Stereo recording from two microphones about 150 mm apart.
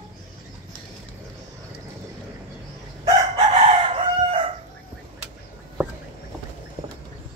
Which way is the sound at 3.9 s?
40° right (ahead or behind).